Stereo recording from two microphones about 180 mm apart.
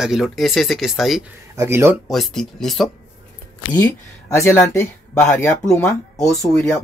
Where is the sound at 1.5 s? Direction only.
15° right (ahead or behind).